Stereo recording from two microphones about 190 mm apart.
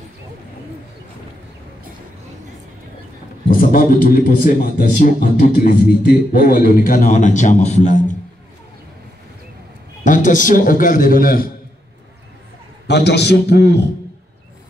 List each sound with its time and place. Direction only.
3.4 s a man's voice: 45° left (ahead or behind)
10.0 s a man's voice: 45° left (ahead or behind)
12.8 s a man's voice: 60° left (ahead or behind)